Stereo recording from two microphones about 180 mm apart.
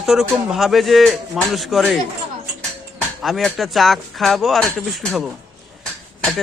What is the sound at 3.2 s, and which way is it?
Speech, centre (ahead or behind).